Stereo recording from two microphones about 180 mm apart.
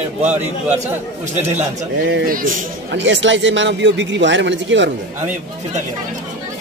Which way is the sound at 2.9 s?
90° right.